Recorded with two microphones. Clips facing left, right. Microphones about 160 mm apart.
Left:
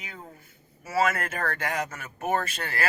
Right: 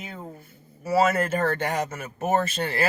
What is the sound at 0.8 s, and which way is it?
Speech, 30° right (ahead or behind).